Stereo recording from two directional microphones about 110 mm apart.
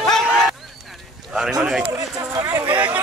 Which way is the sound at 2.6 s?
15° right (ahead or behind).